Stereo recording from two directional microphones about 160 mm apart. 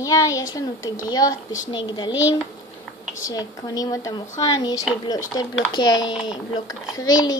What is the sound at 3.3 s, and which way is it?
Speech, 20° left (ahead or behind).